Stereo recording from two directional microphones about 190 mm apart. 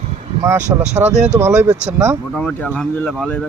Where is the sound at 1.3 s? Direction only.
10° right (ahead or behind).